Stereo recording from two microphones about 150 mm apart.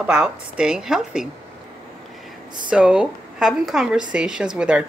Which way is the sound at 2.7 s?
5° right (ahead or behind).